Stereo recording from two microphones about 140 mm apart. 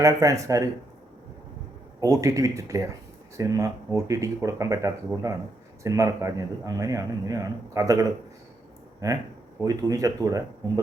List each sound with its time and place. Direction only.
0.0 s a man's voice: 25° right (ahead or behind)
2.0 s a man's voice: 25° right (ahead or behind)